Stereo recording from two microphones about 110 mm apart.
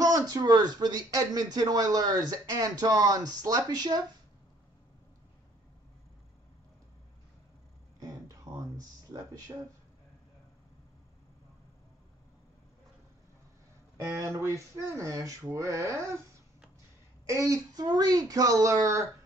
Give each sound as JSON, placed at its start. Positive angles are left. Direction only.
{"t": 0.0, "sound": "speech", "side_deg": -35}
{"t": 8.5, "sound": "a sound", "side_deg": -35}
{"t": 14.0, "sound": "speech", "side_deg": -25}
{"t": 17.3, "sound": "speech", "side_deg": -30}